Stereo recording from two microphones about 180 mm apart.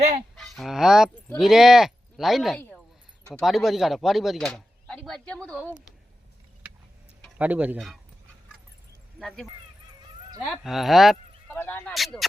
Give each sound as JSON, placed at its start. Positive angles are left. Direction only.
{"t": 0.3, "sound": "speech", "side_deg": 0}
{"t": 7.3, "sound": "speech", "side_deg": -10}
{"t": 9.1, "sound": "speech", "side_deg": 5}
{"t": 11.4, "sound": "speech", "side_deg": 10}